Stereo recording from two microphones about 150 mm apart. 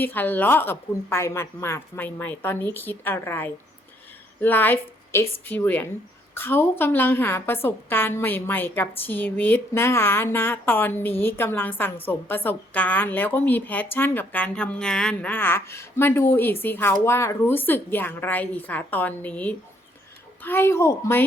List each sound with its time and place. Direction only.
0.0 s a woman's voice: 15° left (ahead or behind)